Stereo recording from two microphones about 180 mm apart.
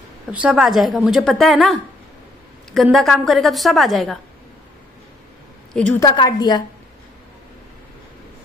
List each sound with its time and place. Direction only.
0.3 s a woman's voice: 5° right (ahead or behind)
2.7 s a woman's voice: centre (ahead or behind)
5.9 s a woman's voice: 20° left (ahead or behind)